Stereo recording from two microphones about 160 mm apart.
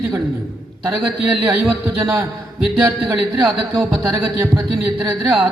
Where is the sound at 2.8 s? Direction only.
5° right (ahead or behind).